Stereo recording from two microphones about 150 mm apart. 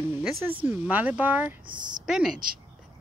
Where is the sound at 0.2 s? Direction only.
10° right (ahead or behind).